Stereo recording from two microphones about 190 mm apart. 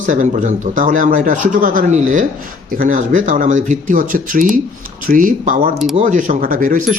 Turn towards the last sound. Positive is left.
turn(degrees=-45)  # may be behind; listen again after turning